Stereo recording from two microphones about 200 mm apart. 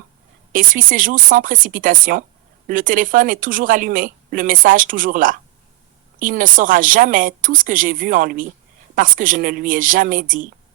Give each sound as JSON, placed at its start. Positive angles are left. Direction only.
{"t": 0.5, "sound": "speech", "side_deg": -45}